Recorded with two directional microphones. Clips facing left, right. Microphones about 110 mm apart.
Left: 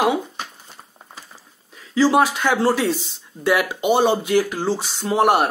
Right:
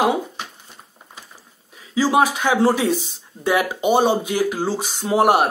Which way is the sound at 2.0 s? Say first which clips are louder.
Left 1 dB; 15° right (ahead or behind).